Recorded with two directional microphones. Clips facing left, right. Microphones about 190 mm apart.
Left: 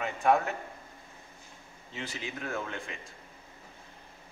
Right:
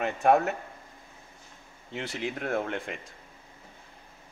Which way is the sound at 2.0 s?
60° right (ahead or behind).